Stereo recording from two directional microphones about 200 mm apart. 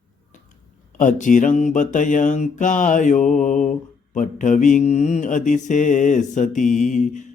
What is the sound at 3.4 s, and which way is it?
Mantra, 40° left (ahead or behind).